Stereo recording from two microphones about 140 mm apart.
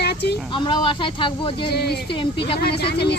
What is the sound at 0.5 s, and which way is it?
Speech, 35° left (ahead or behind).